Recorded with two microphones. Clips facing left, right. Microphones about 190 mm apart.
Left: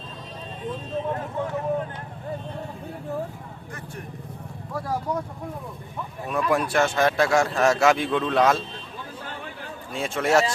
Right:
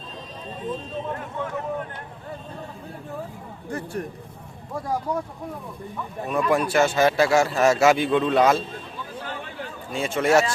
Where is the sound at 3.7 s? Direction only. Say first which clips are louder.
Right 11 dB; 35° right (ahead or behind).